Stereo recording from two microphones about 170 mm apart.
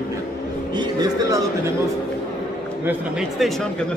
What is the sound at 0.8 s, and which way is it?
Speech, 25° right (ahead or behind).